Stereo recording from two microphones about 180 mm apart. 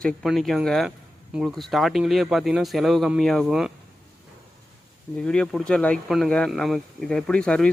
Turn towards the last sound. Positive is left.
turn(degrees=5)  # may be behind; listen again after turning